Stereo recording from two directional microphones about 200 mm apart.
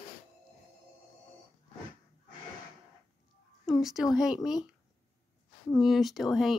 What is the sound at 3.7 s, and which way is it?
Speech, centre (ahead or behind).